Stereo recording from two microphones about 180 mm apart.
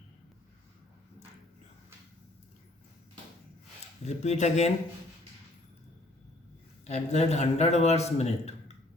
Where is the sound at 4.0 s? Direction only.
40° left (ahead or behind).